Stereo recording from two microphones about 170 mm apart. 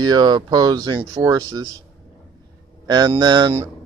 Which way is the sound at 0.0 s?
25° right (ahead or behind).